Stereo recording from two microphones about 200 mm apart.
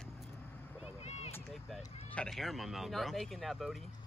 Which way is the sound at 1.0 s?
30° left (ahead or behind).